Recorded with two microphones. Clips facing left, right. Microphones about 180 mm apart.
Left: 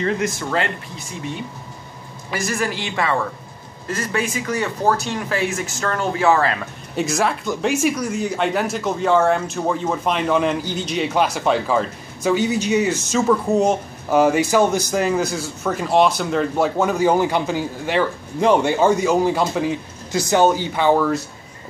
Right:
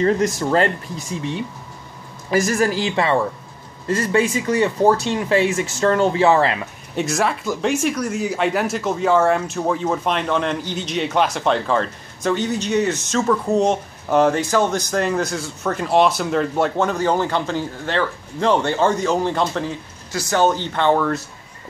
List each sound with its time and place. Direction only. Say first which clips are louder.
0.0 s speech: right 4 dB; 35° right (ahead or behind)
2.3 s speech: right 6 dB; 40° right (ahead or behind); by 6.5 s 25° right (ahead or behind)
7.0 s speech: even; centre (ahead or behind)